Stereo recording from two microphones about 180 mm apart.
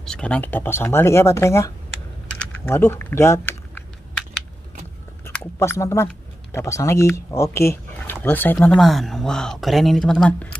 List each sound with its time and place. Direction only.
0.0 s speech: 5° left (ahead or behind)
2.3 s typing: 10° left (ahead or behind)
5.2 s chewing: 10° left (ahead or behind)
6.5 s speech: 15° left (ahead or behind)